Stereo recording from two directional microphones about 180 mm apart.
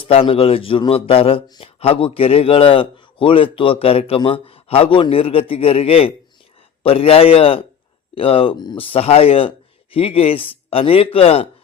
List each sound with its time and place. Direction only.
0.0 s a man's voice: 30° left (ahead or behind)